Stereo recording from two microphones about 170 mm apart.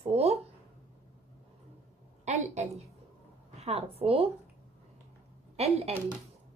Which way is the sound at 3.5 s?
35° right (ahead or behind).